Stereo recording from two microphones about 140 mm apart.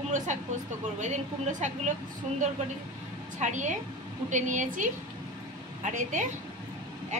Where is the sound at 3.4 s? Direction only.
60° right (ahead or behind).